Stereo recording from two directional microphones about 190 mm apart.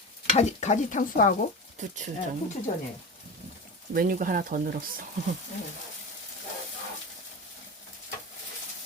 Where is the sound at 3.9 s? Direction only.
45° right (ahead or behind).